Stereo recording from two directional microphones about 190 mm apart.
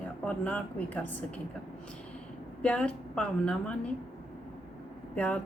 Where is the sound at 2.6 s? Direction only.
5° left (ahead or behind).